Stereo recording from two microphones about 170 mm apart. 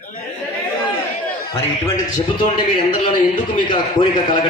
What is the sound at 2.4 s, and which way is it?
A man's voice, 30° left (ahead or behind).